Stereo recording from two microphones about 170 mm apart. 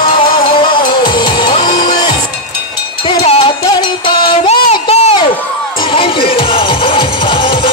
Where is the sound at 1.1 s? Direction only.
25° left (ahead or behind).